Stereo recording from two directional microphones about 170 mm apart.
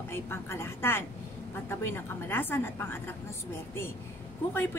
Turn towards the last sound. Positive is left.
turn(degrees=15)  # may be behind; listen again after turning